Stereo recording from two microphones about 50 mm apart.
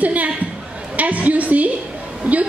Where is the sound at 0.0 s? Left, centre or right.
Right.